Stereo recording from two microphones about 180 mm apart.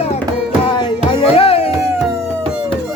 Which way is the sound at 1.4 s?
30° left (ahead or behind).